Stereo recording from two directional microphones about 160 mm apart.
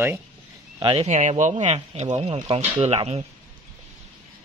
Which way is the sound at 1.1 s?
50° right (ahead or behind).